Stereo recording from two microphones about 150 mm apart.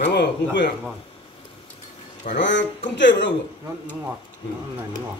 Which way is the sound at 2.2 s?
60° left (ahead or behind).